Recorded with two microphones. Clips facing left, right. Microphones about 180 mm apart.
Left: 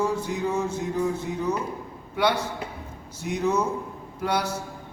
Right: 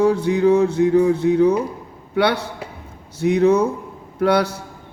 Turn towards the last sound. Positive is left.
turn(degrees=-65)  # may be behind; listen again after turning